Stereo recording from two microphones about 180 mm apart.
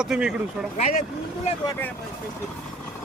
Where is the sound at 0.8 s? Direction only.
40° left (ahead or behind).